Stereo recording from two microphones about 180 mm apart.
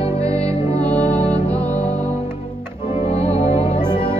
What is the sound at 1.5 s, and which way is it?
Music, 10° left (ahead or behind).